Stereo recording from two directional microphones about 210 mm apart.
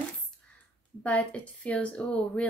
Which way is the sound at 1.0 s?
5° left (ahead or behind).